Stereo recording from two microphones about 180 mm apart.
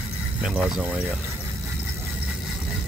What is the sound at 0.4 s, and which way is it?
Speech, 5° right (ahead or behind).